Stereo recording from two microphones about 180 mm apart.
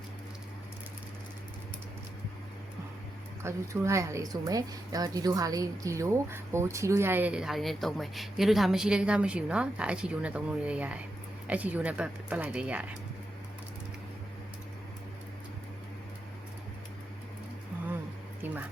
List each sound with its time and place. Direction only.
3.4 s speech: 15° right (ahead or behind)
18.4 s music: 10° right (ahead or behind)